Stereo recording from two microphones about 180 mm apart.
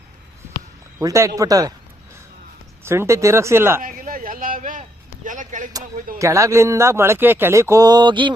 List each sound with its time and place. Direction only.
0.9 s speech: 15° right (ahead or behind)
2.8 s speech: 15° right (ahead or behind)
3.8 s a sound: 50° right (ahead or behind)
6.1 s speech: 15° right (ahead or behind)